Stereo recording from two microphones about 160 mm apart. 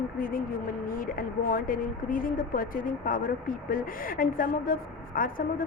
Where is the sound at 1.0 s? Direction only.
60° left (ahead or behind).